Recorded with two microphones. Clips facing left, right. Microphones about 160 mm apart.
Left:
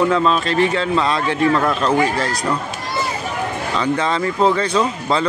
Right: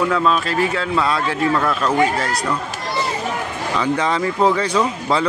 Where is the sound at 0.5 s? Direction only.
5° right (ahead or behind).